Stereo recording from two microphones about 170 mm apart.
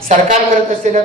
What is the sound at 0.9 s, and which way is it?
Speech, 45° right (ahead or behind).